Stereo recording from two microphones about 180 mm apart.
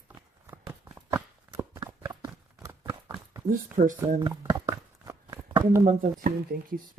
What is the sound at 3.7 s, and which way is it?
Speech, 45° right (ahead or behind).